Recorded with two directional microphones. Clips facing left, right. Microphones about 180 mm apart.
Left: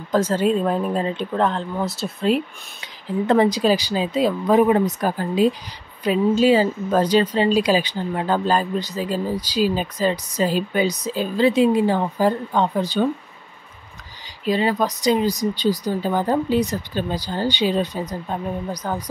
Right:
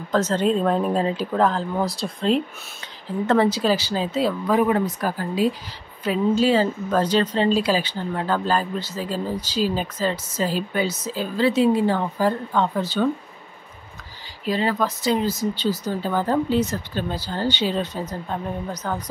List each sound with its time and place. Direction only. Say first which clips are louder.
0.1 s speech: left 2 dB; 10° left (ahead or behind)
14.4 s speech: left 2 dB; 15° left (ahead or behind)